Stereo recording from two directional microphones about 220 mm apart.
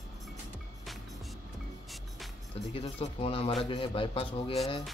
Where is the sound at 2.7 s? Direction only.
25° left (ahead or behind).